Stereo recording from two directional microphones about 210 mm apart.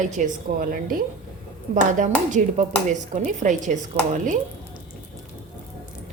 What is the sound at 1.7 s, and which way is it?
A woman's voice, 35° right (ahead or behind).